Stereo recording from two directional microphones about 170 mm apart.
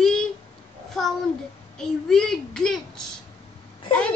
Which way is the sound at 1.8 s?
5° left (ahead or behind).